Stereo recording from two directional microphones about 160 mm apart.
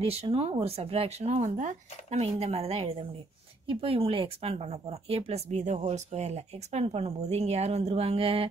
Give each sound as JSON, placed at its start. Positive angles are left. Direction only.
{"t": 0.0, "sound": "speech", "side_deg": -40}